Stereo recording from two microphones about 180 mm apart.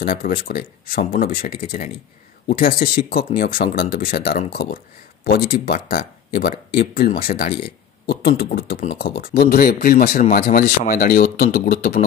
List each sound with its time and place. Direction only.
0.0 s speech: 55° left (ahead or behind)